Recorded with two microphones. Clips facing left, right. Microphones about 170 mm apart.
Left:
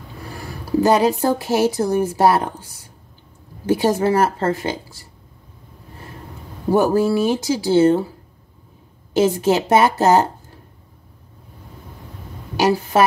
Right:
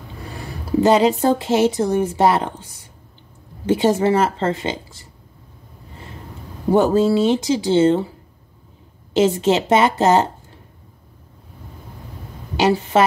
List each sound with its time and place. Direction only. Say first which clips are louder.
0.3 s a sound: even; 20° right (ahead or behind)
1.4 s speech: right 1 dB; 25° right (ahead or behind)
6.7 s speech: right 1 dB; 25° right (ahead or behind)
9.1 s speech: even; 25° right (ahead or behind)
12.5 s a woman's voice: right 1 dB; 25° right (ahead or behind)